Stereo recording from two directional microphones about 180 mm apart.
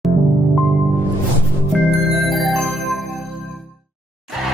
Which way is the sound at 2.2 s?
Centre (ahead or behind).